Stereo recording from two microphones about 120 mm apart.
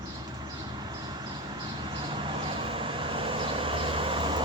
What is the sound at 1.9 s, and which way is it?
Vehicle, 40° right (ahead or behind).